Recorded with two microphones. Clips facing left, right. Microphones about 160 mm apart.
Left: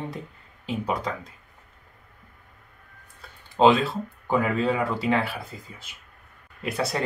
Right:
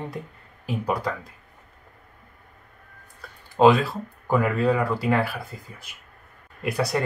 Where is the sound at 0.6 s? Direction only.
20° left (ahead or behind).